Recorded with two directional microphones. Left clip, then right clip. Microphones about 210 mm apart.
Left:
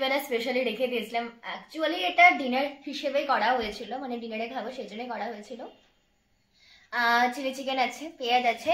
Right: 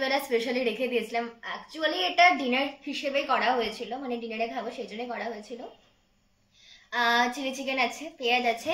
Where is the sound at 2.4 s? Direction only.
10° right (ahead or behind).